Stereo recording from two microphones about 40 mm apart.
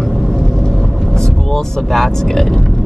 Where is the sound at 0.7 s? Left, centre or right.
Centre.